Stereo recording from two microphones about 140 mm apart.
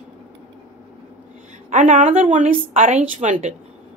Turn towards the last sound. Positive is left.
turn(degrees=-60)  # may be behind; listen again after turning